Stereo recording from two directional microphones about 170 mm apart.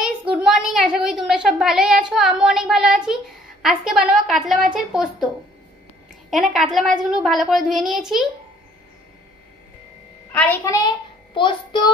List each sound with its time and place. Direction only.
0.0 s a sound: 5° right (ahead or behind)
4.7 s a woman's voice: centre (ahead or behind)
6.5 s a woman's voice: centre (ahead or behind)
10.3 s a child's voice: 10° left (ahead or behind); by 11.9 s 30° left (ahead or behind)